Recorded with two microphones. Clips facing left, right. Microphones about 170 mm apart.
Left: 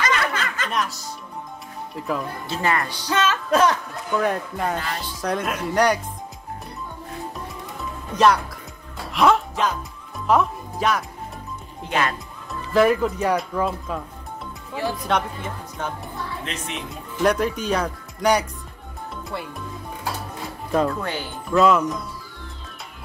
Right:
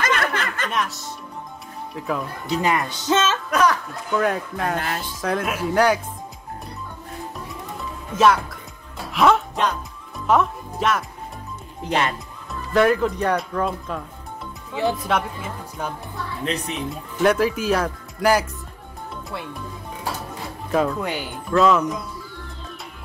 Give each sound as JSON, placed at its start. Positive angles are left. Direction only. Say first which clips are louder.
{"t": 0.0, "sound": "snicker", "louder": "right 1 dB", "side_deg": -55}
{"t": 0.7, "sound": "speech", "louder": "even", "side_deg": 0}
{"t": 2.4, "sound": "speech", "louder": "right 3 dB", "side_deg": -15}
{"t": 3.4, "sound": "speech", "louder": "left 1 dB", "side_deg": 25}
{"t": 4.1, "sound": "speech", "louder": "right 1 dB", "side_deg": 0}
{"t": 8.1, "sound": "speech", "louder": "even", "side_deg": 0}
{"t": 9.1, "sound": "music", "louder": "right 1 dB", "side_deg": 0}
{"t": 11.9, "sound": "speech", "louder": "right 1 dB", "side_deg": -25}
{"t": 12.7, "sound": "speech", "louder": "even", "side_deg": 0}
{"t": 16.4, "sound": "speech", "louder": "right 6 dB", "side_deg": -35}
{"t": 16.7, "sound": "speech", "louder": "right 3 dB", "side_deg": 0}
{"t": 20.7, "sound": "speech", "louder": "even", "side_deg": 0}
{"t": 21.0, "sound": "speech", "louder": "right 2 dB", "side_deg": -15}
{"t": 21.5, "sound": "speech", "louder": "even", "side_deg": 0}